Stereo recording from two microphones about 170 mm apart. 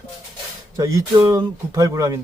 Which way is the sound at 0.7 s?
20° right (ahead or behind).